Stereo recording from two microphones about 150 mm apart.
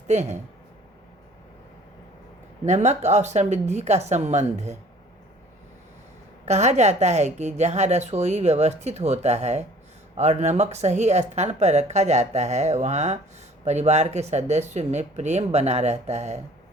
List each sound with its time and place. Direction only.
0.1 s a woman's voice: 50° right (ahead or behind)
2.6 s a woman's voice: 50° right (ahead or behind)
6.4 s a woman's voice: 50° right (ahead or behind)